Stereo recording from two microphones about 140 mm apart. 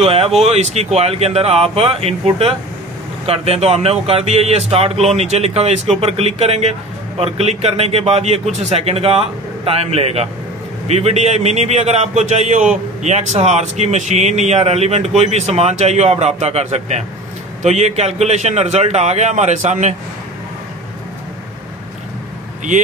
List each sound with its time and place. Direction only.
0.0 s a man's voice: 45° right (ahead or behind)